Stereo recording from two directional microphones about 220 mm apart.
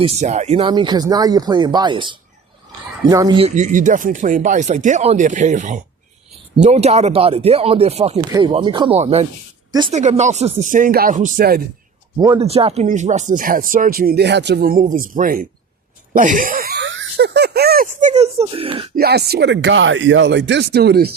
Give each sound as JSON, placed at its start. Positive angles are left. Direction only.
{"t": 0.0, "sound": "speech", "side_deg": -30}
{"t": 12.1, "sound": "speech", "side_deg": -15}
{"t": 12.4, "sound": "speech", "side_deg": -25}
{"t": 16.1, "sound": "a sound", "side_deg": -35}
{"t": 18.9, "sound": "speech", "side_deg": -45}